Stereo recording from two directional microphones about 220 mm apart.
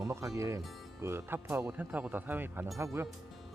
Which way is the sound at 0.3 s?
15° right (ahead or behind).